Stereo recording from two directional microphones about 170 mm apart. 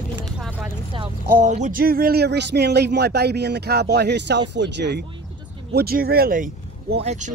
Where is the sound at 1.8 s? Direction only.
60° right (ahead or behind); by 5.0 s 85° right.